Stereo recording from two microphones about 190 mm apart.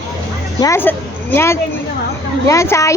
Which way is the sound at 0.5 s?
15° left (ahead or behind).